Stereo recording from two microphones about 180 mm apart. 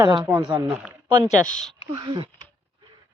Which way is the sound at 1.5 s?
5° left (ahead or behind).